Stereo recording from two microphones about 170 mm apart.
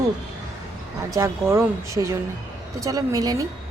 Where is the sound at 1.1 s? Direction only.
15° right (ahead or behind).